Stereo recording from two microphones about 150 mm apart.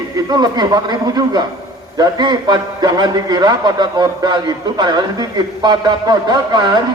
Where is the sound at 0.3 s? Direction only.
30° right (ahead or behind).